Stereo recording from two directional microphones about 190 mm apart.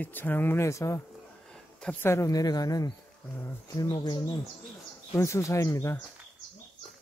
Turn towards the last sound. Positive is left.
turn(degrees=15)  # may be behind; listen again after turning